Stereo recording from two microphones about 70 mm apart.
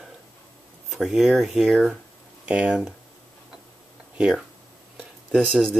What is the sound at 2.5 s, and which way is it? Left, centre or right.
Speech, centre.